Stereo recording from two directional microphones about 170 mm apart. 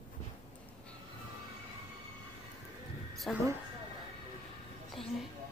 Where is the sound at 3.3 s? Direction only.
Centre (ahead or behind).